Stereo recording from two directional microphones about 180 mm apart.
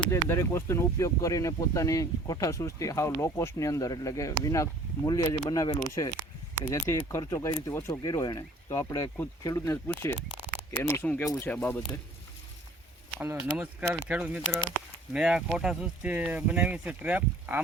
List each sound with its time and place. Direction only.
0.1 s speech: 15° left (ahead or behind)
13.1 s speech: 10° right (ahead or behind)